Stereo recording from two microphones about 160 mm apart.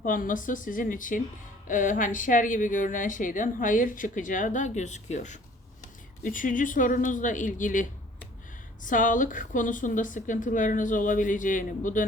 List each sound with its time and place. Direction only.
0.0 s a woman's voice: 55° left (ahead or behind)